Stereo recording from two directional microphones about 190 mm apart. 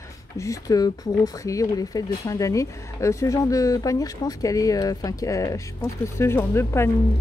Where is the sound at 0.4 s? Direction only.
15° left (ahead or behind).